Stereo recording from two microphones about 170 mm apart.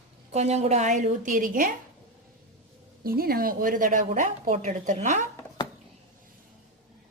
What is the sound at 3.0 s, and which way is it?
A woman's voice, 60° right (ahead or behind).